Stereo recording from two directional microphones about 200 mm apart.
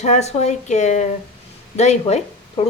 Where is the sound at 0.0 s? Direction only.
35° left (ahead or behind).